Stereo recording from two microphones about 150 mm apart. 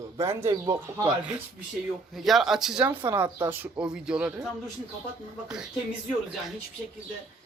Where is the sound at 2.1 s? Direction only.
Centre (ahead or behind).